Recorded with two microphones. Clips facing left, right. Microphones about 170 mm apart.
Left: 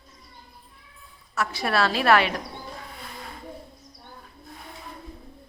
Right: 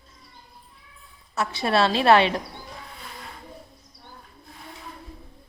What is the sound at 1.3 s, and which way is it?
A woman's voice, 25° right (ahead or behind).